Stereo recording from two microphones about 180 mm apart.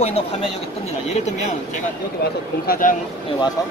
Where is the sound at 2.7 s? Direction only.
50° left (ahead or behind).